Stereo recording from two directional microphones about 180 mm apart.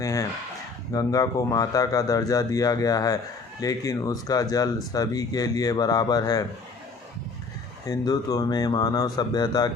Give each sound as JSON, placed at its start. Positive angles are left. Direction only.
{"t": 0.0, "sound": "a sound", "side_deg": 20}
{"t": 0.9, "sound": "speech", "side_deg": 20}
{"t": 7.9, "sound": "speech", "side_deg": 20}